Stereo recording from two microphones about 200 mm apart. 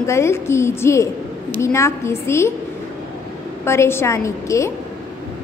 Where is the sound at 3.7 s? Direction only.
15° left (ahead or behind).